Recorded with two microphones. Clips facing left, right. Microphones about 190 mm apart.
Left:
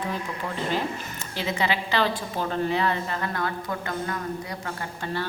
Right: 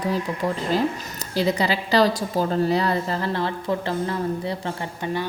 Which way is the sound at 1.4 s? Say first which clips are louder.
Right 5 dB; 35° right (ahead or behind).